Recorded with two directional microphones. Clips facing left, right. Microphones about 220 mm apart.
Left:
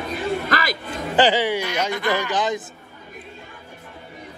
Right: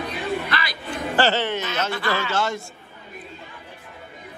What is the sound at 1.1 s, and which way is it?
Speech, 15° left (ahead or behind).